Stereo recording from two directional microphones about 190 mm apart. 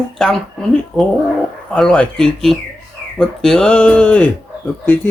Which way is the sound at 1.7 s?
5° left (ahead or behind).